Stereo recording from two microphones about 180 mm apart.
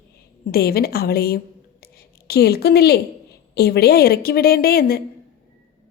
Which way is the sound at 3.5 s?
60° left (ahead or behind).